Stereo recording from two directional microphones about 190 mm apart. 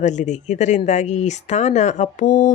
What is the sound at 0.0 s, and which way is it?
Speech, 40° left (ahead or behind).